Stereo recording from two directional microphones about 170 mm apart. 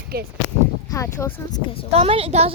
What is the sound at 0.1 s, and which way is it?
Speech, 65° right (ahead or behind).